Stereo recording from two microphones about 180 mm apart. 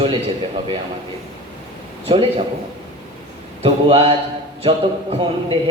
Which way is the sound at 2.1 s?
30° right (ahead or behind).